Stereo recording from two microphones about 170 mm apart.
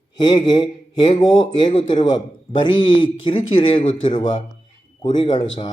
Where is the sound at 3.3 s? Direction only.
30° left (ahead or behind).